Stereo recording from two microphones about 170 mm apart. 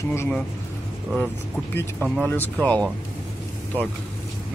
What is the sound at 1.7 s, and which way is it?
Speech, 10° left (ahead or behind).